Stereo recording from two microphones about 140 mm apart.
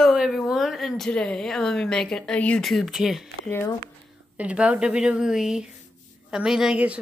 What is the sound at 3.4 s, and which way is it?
Speech, 15° left (ahead or behind).